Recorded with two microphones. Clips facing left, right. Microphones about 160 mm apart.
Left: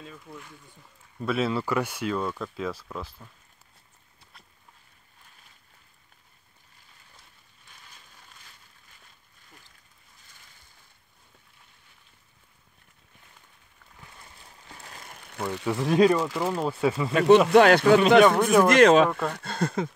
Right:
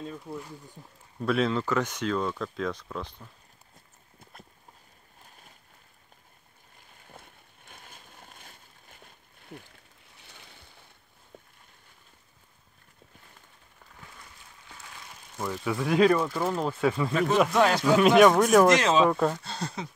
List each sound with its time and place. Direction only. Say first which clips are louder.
0.2 s speech: right 6 dB; 30° right (ahead or behind)
1.2 s speech: right 1 dB; 5° left (ahead or behind)
4.2 s clip-clop: right 6 dB; 50° right (ahead or behind)
7.1 s a sound: right 8 dB; 55° right (ahead or behind)
10.1 s a sound: right 6 dB; 70° right (ahead or behind)
14.8 s a sound: left 2 dB; 40° left (ahead or behind)
15.1 s a sound: left 2 dB; 65° left (ahead or behind)
15.6 s speech: left 2 dB; 20° left (ahead or behind)
16.4 s speech: left 1 dB; centre (ahead or behind)
17.1 s speech: left 11 dB; 75° left (ahead or behind)
18.2 s speech: right 1 dB; centre (ahead or behind)
18.7 s speech: left 5 dB; 60° left (ahead or behind)
19.0 s speech: right 4 dB; 10° right (ahead or behind)
19.3 s speech: left 7 dB; 55° left (ahead or behind)